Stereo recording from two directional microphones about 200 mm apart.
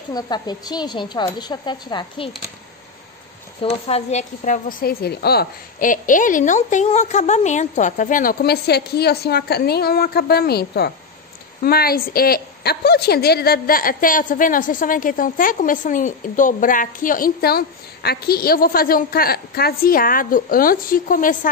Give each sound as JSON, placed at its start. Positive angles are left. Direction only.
{"t": 0.1, "sound": "a woman's voice", "side_deg": 20}
{"t": 3.6, "sound": "a woman's voice", "side_deg": 30}